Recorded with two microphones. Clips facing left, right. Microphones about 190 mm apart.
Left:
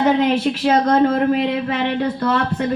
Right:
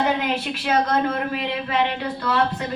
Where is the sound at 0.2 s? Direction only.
40° left (ahead or behind).